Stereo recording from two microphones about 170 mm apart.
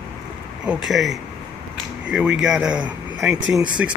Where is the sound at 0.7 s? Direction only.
Centre (ahead or behind).